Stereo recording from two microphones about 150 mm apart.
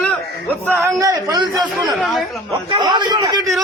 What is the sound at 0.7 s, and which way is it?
A man's voice, 25° right (ahead or behind).